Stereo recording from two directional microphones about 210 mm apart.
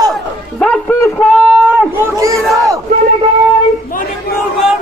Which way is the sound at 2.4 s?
Centre (ahead or behind).